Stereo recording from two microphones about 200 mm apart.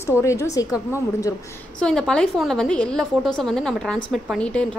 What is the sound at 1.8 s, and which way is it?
A woman's voice, 5° left (ahead or behind).